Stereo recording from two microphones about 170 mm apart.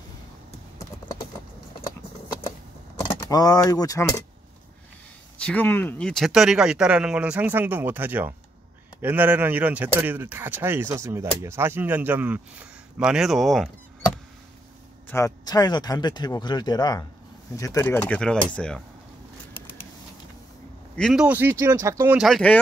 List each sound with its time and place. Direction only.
3.0 s speech: 25° left (ahead or behind)
5.4 s speech: 10° left (ahead or behind)
15.0 s speech: 15° left (ahead or behind)
20.9 s speech: centre (ahead or behind); by 22.1 s 20° right (ahead or behind)
22.1 s speech: centre (ahead or behind)